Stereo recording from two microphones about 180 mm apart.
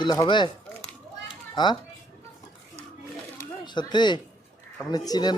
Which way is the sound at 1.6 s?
20° left (ahead or behind).